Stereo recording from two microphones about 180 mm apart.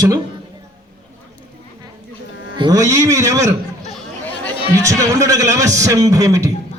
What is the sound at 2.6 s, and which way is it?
Beatboxing, 20° right (ahead or behind).